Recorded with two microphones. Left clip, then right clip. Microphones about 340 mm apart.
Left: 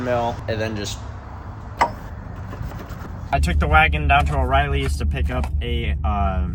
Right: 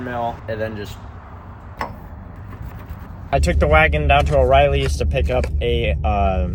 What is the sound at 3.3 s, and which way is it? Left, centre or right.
Speech, right.